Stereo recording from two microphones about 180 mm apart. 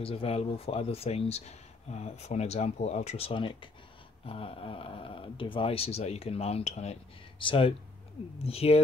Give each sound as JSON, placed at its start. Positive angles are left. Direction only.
{"t": 0.0, "sound": "speech", "side_deg": 30}